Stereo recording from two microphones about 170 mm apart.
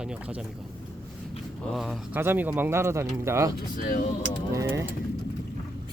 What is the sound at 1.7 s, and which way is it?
Speech, centre (ahead or behind).